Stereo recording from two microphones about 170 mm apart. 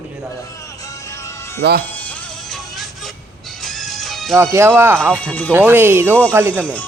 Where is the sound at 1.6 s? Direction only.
70° right (ahead or behind).